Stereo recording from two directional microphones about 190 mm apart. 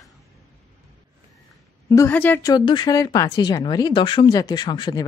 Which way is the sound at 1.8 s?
15° left (ahead or behind).